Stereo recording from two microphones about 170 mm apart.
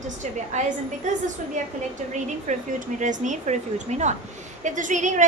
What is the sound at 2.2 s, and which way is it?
A woman's voice, 45° right (ahead or behind).